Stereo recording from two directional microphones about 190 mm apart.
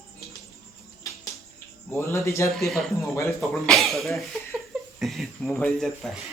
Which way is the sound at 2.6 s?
Centre (ahead or behind).